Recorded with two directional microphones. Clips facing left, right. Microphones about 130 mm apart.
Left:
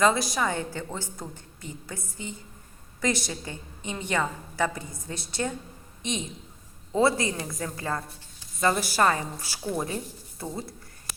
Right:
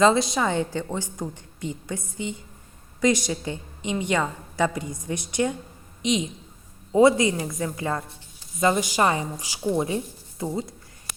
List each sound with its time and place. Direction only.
0.0 s a woman's voice: 25° right (ahead or behind)